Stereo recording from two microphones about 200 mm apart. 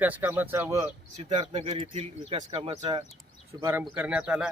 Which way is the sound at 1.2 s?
35° right (ahead or behind).